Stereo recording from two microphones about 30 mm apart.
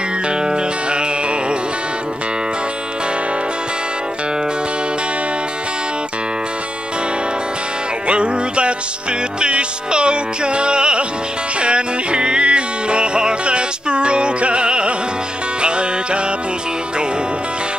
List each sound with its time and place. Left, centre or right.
0.3 s music: right
8.1 s music: right